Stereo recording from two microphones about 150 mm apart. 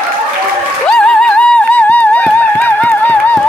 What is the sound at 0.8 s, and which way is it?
Music, 5° left (ahead or behind).